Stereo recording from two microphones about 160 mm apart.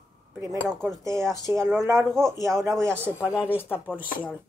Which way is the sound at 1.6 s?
15° right (ahead or behind).